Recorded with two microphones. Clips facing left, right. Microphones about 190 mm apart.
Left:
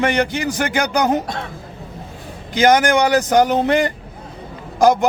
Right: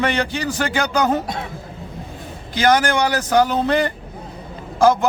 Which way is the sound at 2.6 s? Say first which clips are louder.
Left 3 dB; 20° left (ahead or behind).